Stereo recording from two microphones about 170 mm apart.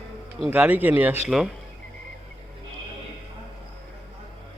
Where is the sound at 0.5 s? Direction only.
10° right (ahead or behind).